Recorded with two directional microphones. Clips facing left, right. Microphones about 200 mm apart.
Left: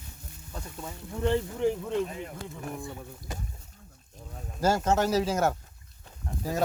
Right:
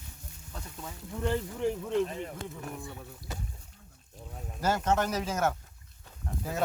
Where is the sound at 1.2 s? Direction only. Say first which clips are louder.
Left 4 dB; 20° left (ahead or behind).